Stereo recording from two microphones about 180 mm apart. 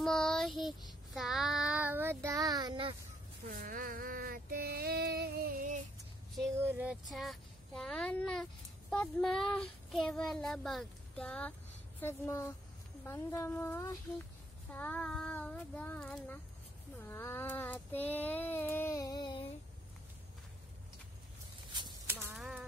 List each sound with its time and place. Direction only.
0.0 s child singing: 5° left (ahead or behind); by 3.0 s 25° right (ahead or behind)
3.4 s child singing: 55° right (ahead or behind)
6.6 s child singing: 10° right (ahead or behind); by 19.4 s 25° left (ahead or behind)
22.3 s a sound: 5° right (ahead or behind)